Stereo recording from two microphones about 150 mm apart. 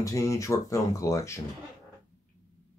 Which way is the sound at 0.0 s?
20° left (ahead or behind).